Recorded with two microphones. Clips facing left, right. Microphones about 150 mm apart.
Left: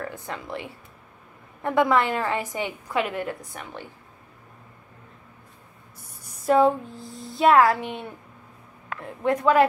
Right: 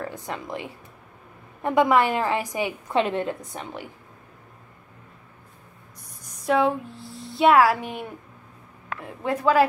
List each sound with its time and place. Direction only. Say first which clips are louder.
0.0 s a woman's voice: right 1 dB; 15° right (ahead or behind)
2.9 s a woman's voice: right 3 dB; 25° right (ahead or behind)
6.4 s a sound: left 3 dB; centre (ahead or behind)
9.2 s a woman's voice: left 1 dB; 5° right (ahead or behind)